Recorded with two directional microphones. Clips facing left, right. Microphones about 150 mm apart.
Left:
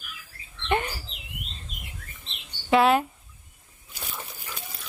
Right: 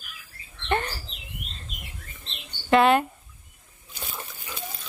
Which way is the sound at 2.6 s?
5° left (ahead or behind).